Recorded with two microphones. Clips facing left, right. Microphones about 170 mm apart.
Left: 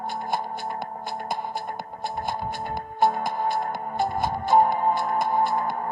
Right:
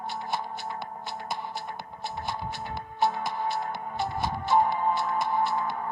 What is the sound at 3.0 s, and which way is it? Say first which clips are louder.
Music: left 4 dB; 50° left (ahead or behind).